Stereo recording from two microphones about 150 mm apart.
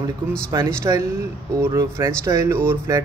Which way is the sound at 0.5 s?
20° right (ahead or behind).